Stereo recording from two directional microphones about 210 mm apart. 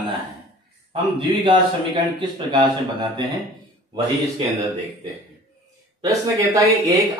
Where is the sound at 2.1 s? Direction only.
20° right (ahead or behind).